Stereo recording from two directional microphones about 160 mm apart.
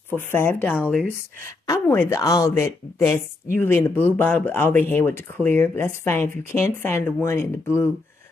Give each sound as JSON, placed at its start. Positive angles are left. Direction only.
{"t": 0.1, "sound": "speech", "side_deg": 15}